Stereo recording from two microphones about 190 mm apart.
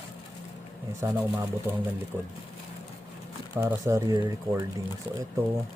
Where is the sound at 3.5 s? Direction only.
15° right (ahead or behind).